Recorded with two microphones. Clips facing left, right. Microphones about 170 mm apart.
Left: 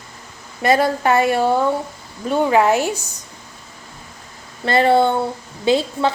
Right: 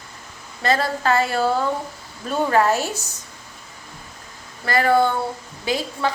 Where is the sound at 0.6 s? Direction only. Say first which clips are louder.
Left 5 dB; 20° left (ahead or behind).